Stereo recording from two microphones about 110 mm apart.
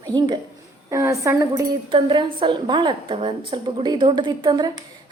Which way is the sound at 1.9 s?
50° right (ahead or behind).